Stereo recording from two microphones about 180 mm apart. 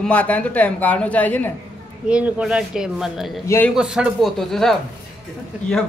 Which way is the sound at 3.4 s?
10° left (ahead or behind).